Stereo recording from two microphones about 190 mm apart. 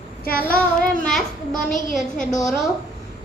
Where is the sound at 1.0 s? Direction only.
Centre (ahead or behind).